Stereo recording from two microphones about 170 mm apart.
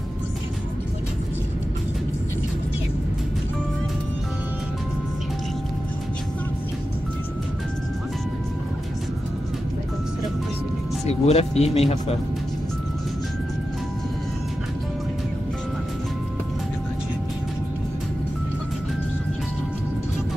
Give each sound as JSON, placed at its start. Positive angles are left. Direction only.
{"t": 11.1, "sound": "speech", "side_deg": 40}